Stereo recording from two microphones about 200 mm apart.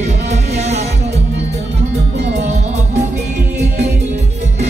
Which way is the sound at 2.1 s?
60° right (ahead or behind).